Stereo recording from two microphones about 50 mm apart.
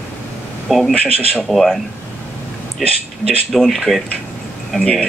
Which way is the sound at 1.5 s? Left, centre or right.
Centre.